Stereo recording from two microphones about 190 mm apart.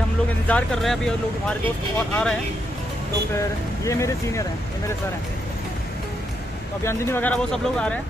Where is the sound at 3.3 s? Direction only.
15° left (ahead or behind).